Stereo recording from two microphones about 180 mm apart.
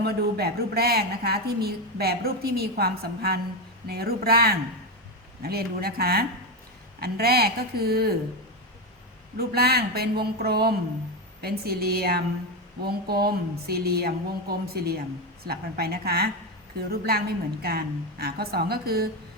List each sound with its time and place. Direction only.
0.0 s a woman's voice: 65° right (ahead or behind)
9.4 s a woman's voice: 60° right (ahead or behind)